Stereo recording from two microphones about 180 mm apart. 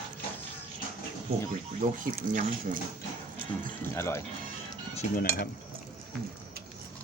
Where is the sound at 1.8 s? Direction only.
50° right (ahead or behind).